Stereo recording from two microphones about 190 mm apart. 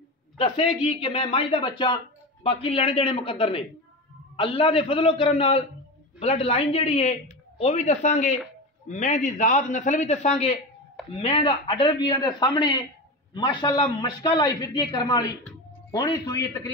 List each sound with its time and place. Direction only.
0.4 s a man's voice: 30° left (ahead or behind)